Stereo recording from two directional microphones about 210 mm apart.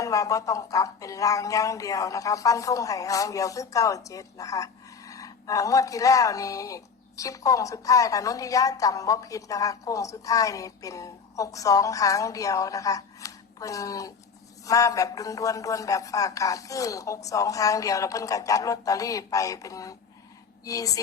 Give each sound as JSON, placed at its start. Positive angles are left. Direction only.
{"t": 0.0, "sound": "speech", "side_deg": 15}